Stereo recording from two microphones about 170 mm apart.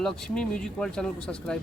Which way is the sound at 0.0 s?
5° left (ahead or behind).